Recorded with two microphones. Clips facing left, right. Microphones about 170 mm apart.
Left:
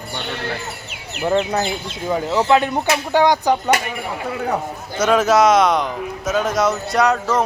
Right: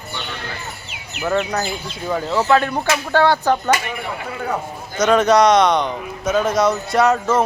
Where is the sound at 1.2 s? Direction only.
25° left (ahead or behind).